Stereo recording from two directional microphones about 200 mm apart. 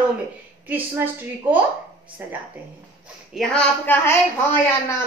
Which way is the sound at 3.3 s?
5° left (ahead or behind).